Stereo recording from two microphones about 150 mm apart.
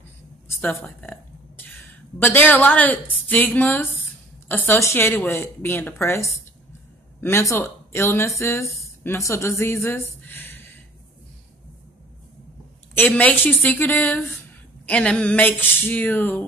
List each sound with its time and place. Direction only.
0.6 s a sound: 10° left (ahead or behind)
2.2 s speech: 10° left (ahead or behind)
12.9 s speech: 10° left (ahead or behind)